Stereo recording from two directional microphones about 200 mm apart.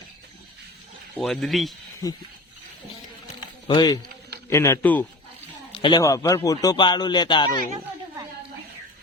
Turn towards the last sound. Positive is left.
turn(degrees=25)  # may be behind; listen again after turning